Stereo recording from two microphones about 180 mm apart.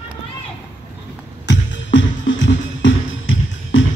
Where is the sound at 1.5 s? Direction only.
90° left.